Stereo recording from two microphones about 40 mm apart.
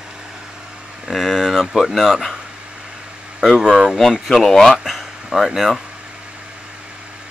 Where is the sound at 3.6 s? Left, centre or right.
Centre.